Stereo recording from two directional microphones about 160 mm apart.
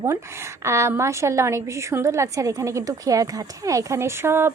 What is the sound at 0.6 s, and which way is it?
A woman's voice, 15° right (ahead or behind).